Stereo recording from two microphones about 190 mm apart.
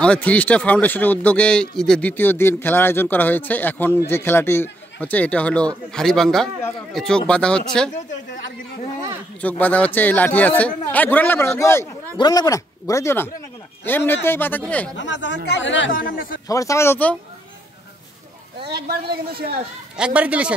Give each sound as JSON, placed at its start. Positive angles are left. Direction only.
{"t": 0.0, "sound": "speech", "side_deg": 5}
{"t": 9.4, "sound": "speech", "side_deg": 10}
{"t": 15.0, "sound": "speech", "side_deg": 75}
{"t": 15.9, "sound": "a man's voice", "side_deg": 50}
{"t": 16.4, "sound": "speech", "side_deg": 15}
{"t": 18.7, "sound": "a man's voice", "side_deg": -55}
{"t": 20.0, "sound": "a man's voice", "side_deg": -5}